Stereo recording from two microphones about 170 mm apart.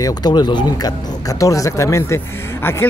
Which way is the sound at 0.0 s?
25° left (ahead or behind).